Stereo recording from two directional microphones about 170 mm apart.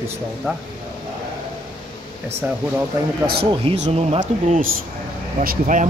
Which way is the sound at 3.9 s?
45° right (ahead or behind).